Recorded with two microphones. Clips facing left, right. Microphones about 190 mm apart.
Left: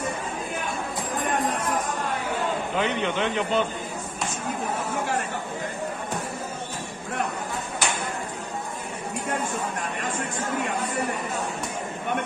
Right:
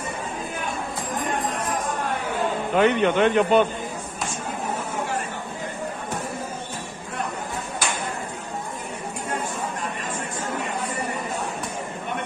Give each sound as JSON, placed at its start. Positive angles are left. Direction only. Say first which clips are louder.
{"t": 2.7, "sound": "a man's voice", "louder": "right 10 dB", "side_deg": -55}